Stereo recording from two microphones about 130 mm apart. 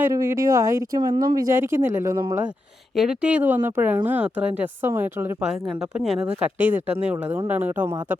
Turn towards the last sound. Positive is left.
turn(degrees=-15)  # may be behind; listen again after turning